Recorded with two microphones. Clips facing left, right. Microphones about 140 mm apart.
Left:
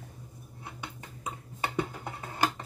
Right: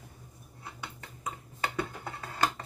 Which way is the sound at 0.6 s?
20° left (ahead or behind).